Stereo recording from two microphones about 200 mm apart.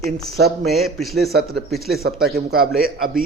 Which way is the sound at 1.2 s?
50° right (ahead or behind).